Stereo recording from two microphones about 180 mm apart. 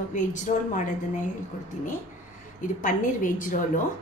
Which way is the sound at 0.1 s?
45° left (ahead or behind).